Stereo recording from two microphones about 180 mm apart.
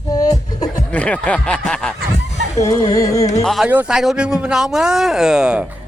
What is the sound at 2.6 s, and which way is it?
Speech, 20° left (ahead or behind).